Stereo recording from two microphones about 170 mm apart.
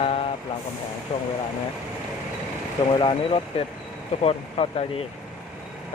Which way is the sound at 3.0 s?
30° left (ahead or behind).